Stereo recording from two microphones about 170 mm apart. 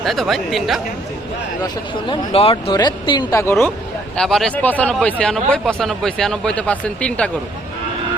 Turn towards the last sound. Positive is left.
turn(degrees=5)  # may be behind; listen again after turning